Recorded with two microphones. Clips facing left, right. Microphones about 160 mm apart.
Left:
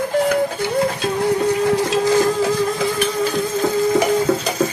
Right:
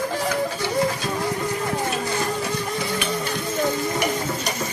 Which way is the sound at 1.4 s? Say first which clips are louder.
Left 8 dB; 90° left.